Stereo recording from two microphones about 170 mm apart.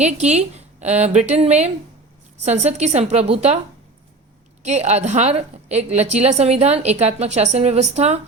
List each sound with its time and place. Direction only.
0.0 s a woman's voice: 40° right (ahead or behind)
4.6 s a woman's voice: 40° right (ahead or behind)